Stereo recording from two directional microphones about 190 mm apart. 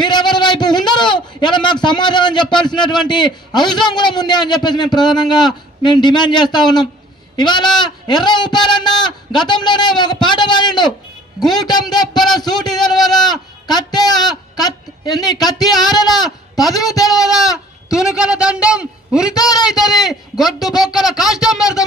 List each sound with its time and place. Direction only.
0.0 s a sound: 25° left (ahead or behind)
2.9 s a man's voice: 25° left (ahead or behind)
17.2 s a man's voice: centre (ahead or behind)
17.5 s goat: 15° left (ahead or behind)
18.0 s a man's voice: 5° right (ahead or behind)
19.3 s a man's voice: 20° left (ahead or behind)
21.2 s a man's voice: centre (ahead or behind)
21.5 s a man's voice: 20° left (ahead or behind)